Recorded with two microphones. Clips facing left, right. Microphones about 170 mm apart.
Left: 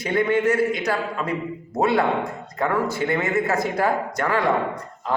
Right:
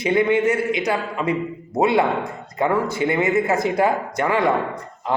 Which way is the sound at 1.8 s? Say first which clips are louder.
Right 2 dB; 15° right (ahead or behind).